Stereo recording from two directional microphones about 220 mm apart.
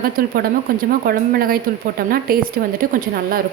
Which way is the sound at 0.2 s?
40° right (ahead or behind).